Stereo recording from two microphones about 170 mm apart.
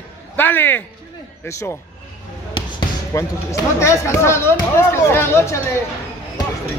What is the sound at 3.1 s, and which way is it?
Speech, 20° left (ahead or behind).